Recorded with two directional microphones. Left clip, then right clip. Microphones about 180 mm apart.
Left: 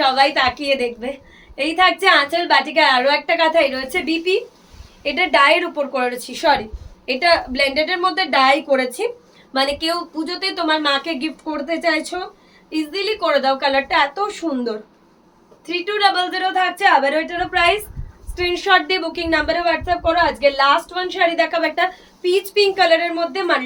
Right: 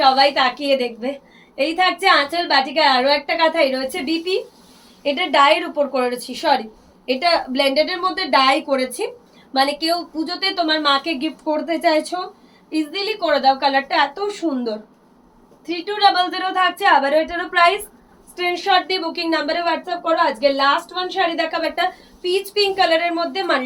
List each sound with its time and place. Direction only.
0.0 s a woman's voice: 20° left (ahead or behind)